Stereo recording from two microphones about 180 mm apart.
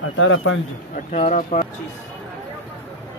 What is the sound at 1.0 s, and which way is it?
Speech, 40° left (ahead or behind).